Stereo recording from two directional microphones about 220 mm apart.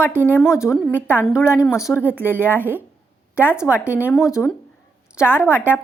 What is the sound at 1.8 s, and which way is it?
Speech, 5° right (ahead or behind).